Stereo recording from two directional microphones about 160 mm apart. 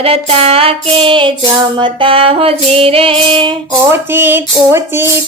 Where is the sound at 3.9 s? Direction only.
15° right (ahead or behind).